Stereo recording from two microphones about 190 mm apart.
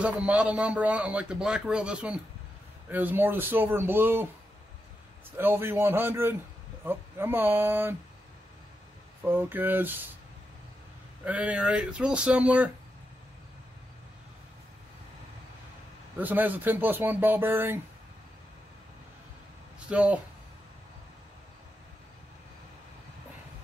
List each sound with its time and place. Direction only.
0.0 s a man's voice: 5° right (ahead or behind)
5.4 s a man's voice: 10° right (ahead or behind)
9.2 s a man's voice: 10° right (ahead or behind)
11.2 s a man's voice: 5° right (ahead or behind)
16.2 s a man's voice: 10° right (ahead or behind)
19.9 s a man's voice: 5° right (ahead or behind)